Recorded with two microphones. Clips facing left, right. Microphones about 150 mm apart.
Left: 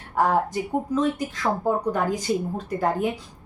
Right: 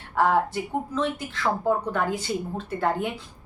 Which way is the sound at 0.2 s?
40° left (ahead or behind).